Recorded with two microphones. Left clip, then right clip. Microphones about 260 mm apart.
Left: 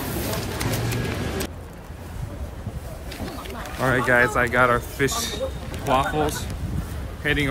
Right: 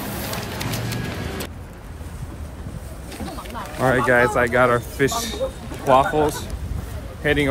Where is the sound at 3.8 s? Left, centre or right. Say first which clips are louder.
Right 2 dB; centre.